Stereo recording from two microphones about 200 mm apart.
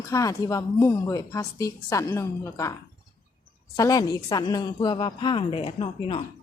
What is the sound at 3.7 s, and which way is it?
A woman's voice, 20° left (ahead or behind).